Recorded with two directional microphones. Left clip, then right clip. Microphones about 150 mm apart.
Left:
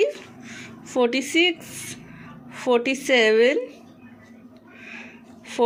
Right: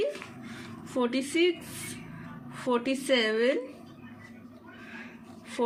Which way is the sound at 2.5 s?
40° left (ahead or behind).